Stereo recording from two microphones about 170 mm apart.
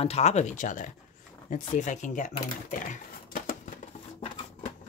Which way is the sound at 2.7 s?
50° left (ahead or behind).